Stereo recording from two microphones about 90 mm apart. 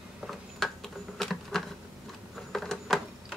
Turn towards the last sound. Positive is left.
turn(degrees=5)  # may be behind; listen again after turning